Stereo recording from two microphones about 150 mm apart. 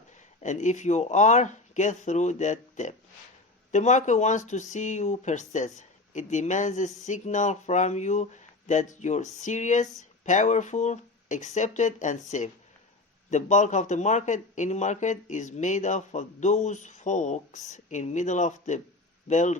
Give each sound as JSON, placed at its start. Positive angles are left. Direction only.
{"t": 0.4, "sound": "speech", "side_deg": 55}